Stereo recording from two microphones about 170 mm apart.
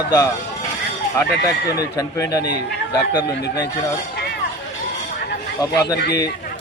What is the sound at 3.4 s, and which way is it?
Speech, 75° left (ahead or behind).